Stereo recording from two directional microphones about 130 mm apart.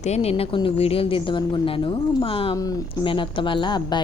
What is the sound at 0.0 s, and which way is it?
A woman's voice, 55° left (ahead or behind).